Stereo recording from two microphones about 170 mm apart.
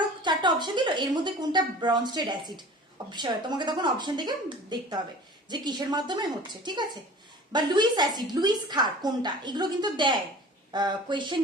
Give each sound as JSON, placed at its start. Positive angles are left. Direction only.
{"t": 0.2, "sound": "a woman's voice", "side_deg": -25}